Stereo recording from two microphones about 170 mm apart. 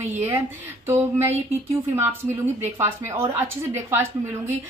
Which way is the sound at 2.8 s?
15° right (ahead or behind).